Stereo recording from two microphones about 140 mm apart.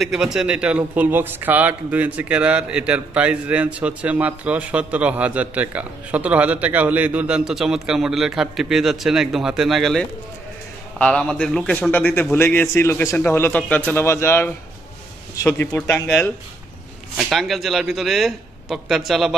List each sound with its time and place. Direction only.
0.0 s a man's voice: 5° right (ahead or behind); by 16.1 s 20° left (ahead or behind)
17.2 s a man's voice: centre (ahead or behind)